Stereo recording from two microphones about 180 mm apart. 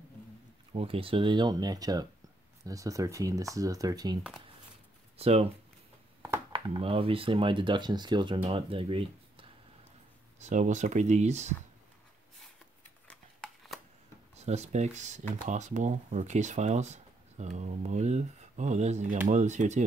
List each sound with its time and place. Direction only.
0.7 s speech: 30° right (ahead or behind)
5.1 s speech: 35° right (ahead or behind)
6.5 s speech: 30° right (ahead or behind)
10.4 s speech: 40° right (ahead or behind)
13.1 s a sound: 5° left (ahead or behind)
14.3 s speech: 40° right (ahead or behind)